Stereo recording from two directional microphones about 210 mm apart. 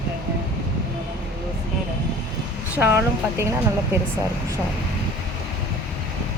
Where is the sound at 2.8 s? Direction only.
10° right (ahead or behind).